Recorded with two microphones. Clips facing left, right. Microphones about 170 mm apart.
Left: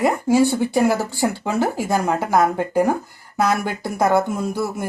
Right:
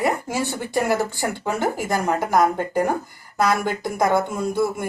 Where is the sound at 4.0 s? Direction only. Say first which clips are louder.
Left 3 dB; 5° left (ahead or behind).